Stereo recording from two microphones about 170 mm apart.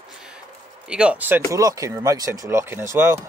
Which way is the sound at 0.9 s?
5° right (ahead or behind).